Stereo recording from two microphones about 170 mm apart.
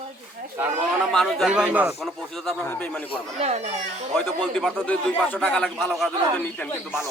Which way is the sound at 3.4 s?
40° right (ahead or behind).